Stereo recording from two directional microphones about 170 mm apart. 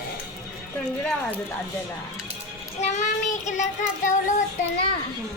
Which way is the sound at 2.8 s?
45° left (ahead or behind).